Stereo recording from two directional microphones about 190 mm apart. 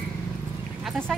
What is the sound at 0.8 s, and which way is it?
Speech, 5° left (ahead or behind).